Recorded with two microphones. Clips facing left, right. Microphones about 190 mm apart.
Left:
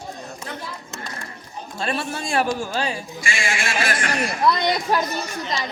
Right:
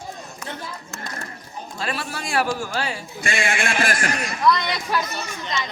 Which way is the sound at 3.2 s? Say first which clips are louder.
Right 5 dB; 60° right (ahead or behind).